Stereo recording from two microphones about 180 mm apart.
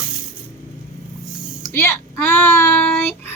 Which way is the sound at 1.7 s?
15° left (ahead or behind).